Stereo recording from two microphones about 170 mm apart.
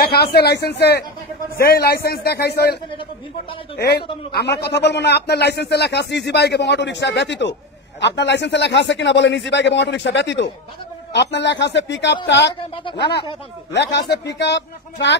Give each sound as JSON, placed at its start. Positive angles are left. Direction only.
{"t": 0.0, "sound": "a man's voice", "side_deg": 70}